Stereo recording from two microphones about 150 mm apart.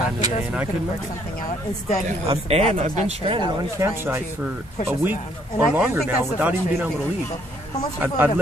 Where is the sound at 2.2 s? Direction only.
45° right (ahead or behind).